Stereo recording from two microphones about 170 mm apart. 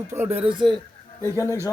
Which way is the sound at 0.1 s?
15° right (ahead or behind).